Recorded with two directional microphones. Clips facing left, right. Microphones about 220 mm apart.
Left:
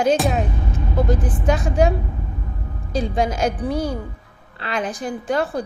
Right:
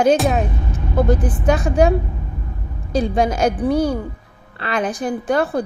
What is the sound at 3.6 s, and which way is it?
A woman's voice, 60° right (ahead or behind).